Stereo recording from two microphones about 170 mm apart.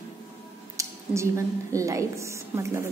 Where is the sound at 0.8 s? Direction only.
15° right (ahead or behind).